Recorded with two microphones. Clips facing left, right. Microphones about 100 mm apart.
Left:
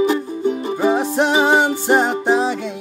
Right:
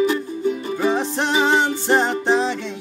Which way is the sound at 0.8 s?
10° left (ahead or behind).